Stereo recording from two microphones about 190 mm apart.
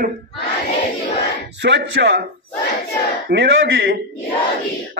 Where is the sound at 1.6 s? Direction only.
70° right (ahead or behind).